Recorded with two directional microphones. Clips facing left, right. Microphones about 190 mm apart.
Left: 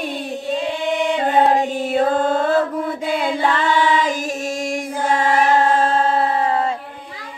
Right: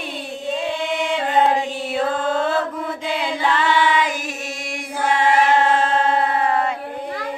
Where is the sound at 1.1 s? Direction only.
40° left (ahead or behind).